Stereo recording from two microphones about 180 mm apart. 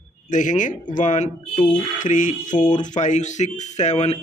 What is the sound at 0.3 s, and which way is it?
A man's voice, 45° left (ahead or behind).